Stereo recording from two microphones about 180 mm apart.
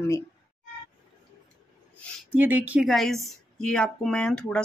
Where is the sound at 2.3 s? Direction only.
10° right (ahead or behind).